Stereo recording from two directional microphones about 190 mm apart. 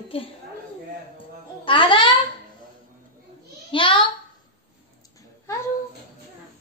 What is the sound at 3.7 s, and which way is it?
Speech, 25° left (ahead or behind).